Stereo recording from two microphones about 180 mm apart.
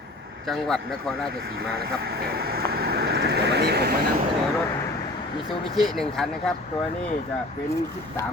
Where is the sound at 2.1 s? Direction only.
60° right (ahead or behind).